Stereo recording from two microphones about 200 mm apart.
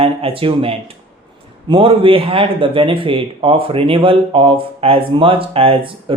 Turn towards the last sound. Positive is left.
turn(degrees=-25)  # may be behind; listen again after turning